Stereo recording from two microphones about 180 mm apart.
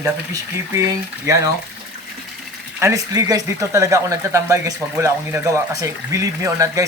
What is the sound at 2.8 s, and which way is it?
Speech, 20° right (ahead or behind).